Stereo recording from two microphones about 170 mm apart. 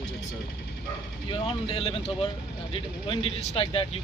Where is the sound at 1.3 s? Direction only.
35° left (ahead or behind).